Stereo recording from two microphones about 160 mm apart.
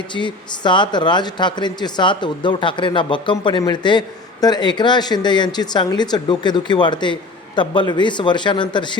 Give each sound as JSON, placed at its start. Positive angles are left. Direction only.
{"t": 0.1, "sound": "speech", "side_deg": 30}